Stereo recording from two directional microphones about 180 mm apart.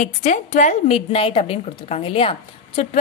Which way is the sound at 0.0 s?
40° left (ahead or behind).